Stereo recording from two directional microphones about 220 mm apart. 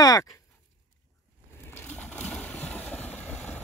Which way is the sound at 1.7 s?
10° left (ahead or behind).